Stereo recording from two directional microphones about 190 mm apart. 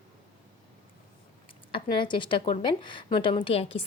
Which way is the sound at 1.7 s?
25° left (ahead or behind).